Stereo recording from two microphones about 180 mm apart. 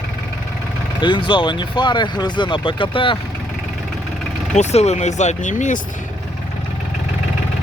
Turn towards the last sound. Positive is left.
turn(degrees=45)  # may be behind; listen again after turning